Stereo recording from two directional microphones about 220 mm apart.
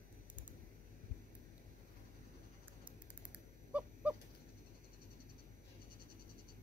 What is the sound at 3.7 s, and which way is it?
Honk, 5° right (ahead or behind).